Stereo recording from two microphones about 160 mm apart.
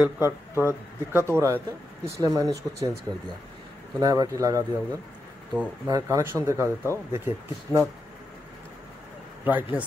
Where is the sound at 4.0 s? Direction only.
20° right (ahead or behind).